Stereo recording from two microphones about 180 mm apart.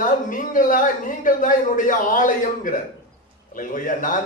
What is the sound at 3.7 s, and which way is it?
Speech, 45° left (ahead or behind).